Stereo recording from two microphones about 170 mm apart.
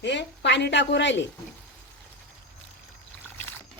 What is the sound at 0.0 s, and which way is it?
A woman's voice, 90° left.